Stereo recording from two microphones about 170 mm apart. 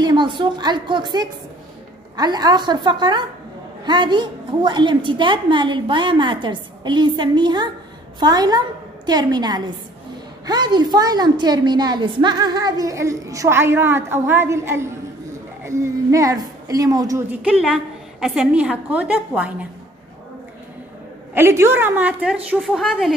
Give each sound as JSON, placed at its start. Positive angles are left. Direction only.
{"t": 0.0, "sound": "a woman's voice", "side_deg": -25}
{"t": 17.3, "sound": "a woman's voice", "side_deg": -5}
{"t": 21.4, "sound": "a woman's voice", "side_deg": -15}